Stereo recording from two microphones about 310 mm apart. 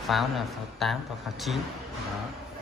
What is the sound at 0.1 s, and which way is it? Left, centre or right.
Speech, centre.